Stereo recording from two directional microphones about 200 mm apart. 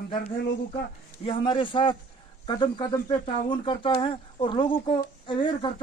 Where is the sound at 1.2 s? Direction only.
25° left (ahead or behind).